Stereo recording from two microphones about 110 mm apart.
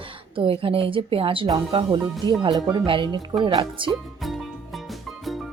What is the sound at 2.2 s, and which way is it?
Speech, 40° right (ahead or behind).